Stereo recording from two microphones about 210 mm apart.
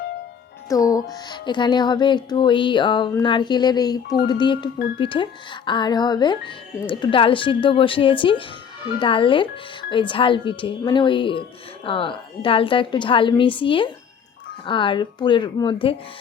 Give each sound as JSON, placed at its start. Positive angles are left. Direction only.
{"t": 0.7, "sound": "speech", "side_deg": 15}